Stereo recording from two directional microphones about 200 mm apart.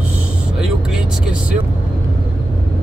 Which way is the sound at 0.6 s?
5° right (ahead or behind).